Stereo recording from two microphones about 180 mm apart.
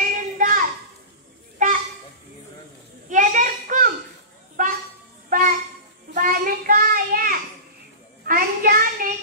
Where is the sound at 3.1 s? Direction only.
45° right (ahead or behind).